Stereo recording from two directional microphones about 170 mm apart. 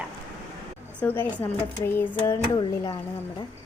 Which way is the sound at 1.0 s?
10° left (ahead or behind).